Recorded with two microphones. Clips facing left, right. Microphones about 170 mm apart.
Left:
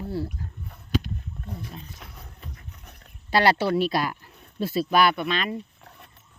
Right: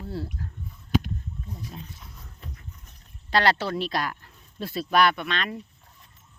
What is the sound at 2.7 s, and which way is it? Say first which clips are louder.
Horse: left 2 dB; 65° left (ahead or behind).